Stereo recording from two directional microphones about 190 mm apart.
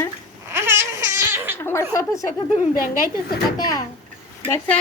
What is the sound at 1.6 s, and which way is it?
Speech, 15° left (ahead or behind).